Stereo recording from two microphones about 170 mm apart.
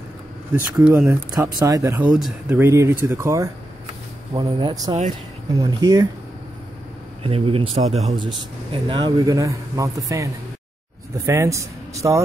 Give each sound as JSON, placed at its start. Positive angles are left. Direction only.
{"t": 0.8, "sound": "speech", "side_deg": -15}
{"t": 2.1, "sound": "speech", "side_deg": 0}
{"t": 2.5, "sound": "speech", "side_deg": -15}
{"t": 7.2, "sound": "speech", "side_deg": -35}
{"t": 8.1, "sound": "speech", "side_deg": -30}